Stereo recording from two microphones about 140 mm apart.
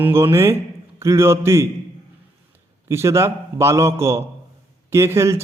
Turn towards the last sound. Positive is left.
turn(degrees=-20)  # may be behind; listen again after turning